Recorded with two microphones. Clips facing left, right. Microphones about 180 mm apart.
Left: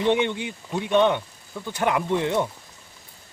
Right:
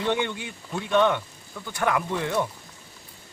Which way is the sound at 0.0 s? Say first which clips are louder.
Left 4 dB; 20° left (ahead or behind).